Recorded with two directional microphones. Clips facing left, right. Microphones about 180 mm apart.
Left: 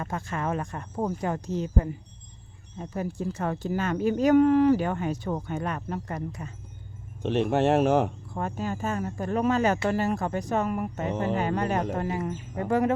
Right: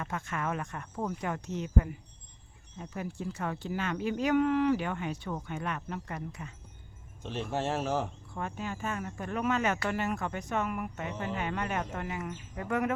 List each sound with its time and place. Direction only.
0.0 s speech: 35° left (ahead or behind)
7.2 s speech: 70° left (ahead or behind)
8.3 s speech: 40° left (ahead or behind)